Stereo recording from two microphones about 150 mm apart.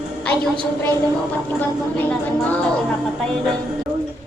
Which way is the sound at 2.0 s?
10° left (ahead or behind).